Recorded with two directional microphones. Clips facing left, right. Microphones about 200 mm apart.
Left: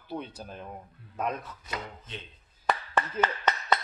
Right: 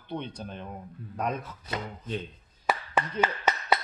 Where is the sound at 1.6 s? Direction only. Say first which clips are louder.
Right 3 dB; 40° right (ahead or behind).